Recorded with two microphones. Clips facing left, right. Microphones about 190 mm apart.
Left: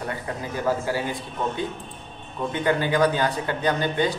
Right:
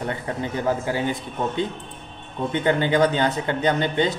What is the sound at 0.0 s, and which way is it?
A man's voice, 25° right (ahead or behind).